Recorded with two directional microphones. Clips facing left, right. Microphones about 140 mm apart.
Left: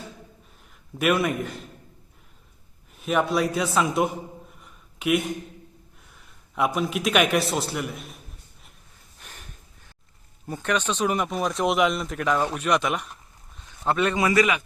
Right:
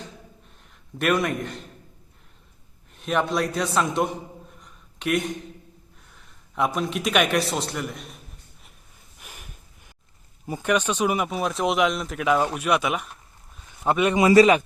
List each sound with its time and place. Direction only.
0.9 s speech: 5° left (ahead or behind)
2.9 s speech: 5° left (ahead or behind)
4.6 s a sound: 5° left (ahead or behind)
6.1 s a man's voice: centre (ahead or behind)
9.2 s a sound: 10° right (ahead or behind)
10.4 s speech: 10° right (ahead or behind)
13.8 s a man's voice: 15° right (ahead or behind); by 14.6 s 30° right (ahead or behind)